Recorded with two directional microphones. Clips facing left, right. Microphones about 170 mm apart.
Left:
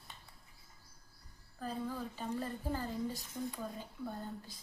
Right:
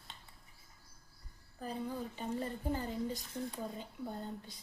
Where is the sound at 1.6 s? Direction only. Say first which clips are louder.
Even; 20° right (ahead or behind).